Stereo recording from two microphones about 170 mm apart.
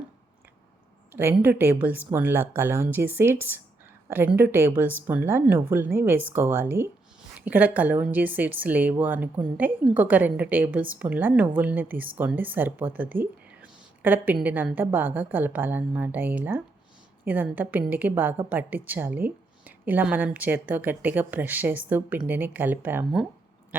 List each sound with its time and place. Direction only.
1.1 s a woman's voice: 10° right (ahead or behind)